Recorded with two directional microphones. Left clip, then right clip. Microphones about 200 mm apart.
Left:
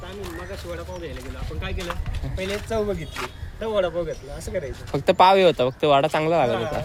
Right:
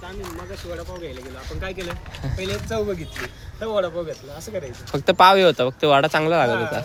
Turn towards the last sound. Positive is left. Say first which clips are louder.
# right 2 dB
turn(degrees=-15)  # may be behind; listen again after turning